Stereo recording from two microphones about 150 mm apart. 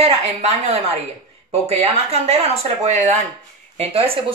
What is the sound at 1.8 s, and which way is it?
Speech, 45° right (ahead or behind).